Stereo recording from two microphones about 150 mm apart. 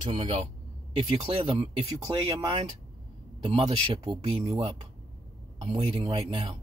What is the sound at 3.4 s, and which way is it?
Speech, 40° right (ahead or behind).